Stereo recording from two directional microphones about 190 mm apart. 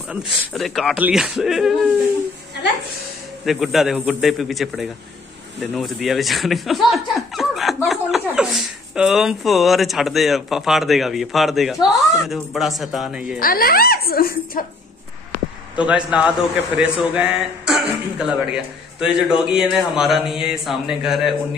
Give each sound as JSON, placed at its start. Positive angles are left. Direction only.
{"t": 0.1, "sound": "speech", "side_deg": 0}
{"t": 3.4, "sound": "speech", "side_deg": 0}
{"t": 13.4, "sound": "speech", "side_deg": 50}
{"t": 15.7, "sound": "speech", "side_deg": -5}